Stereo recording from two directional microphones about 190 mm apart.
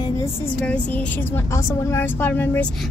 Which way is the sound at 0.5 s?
5° left (ahead or behind).